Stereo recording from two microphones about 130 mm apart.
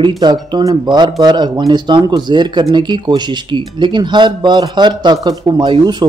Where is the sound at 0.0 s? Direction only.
35° right (ahead or behind).